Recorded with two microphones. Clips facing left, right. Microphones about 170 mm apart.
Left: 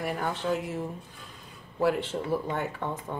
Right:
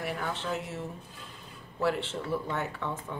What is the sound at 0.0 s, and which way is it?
Speech, 50° left (ahead or behind).